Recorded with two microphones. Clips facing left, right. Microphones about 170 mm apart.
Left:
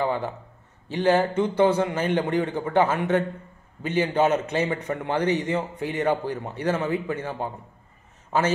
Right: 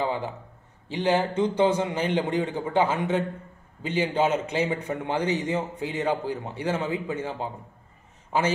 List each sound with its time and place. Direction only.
0.0 s a man's voice: 15° right (ahead or behind)
5.2 s a man's voice: 60° left (ahead or behind)
5.5 s a man's voice: 15° right (ahead or behind)